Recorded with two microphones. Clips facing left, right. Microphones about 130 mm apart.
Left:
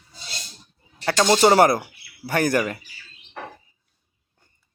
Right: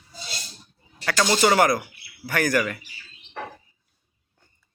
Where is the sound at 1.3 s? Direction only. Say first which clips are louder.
Left 4 dB; 35° left (ahead or behind).